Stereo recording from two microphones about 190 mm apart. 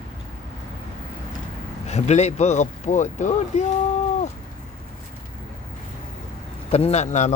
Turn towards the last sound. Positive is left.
turn(degrees=35)  # may be behind; listen again after turning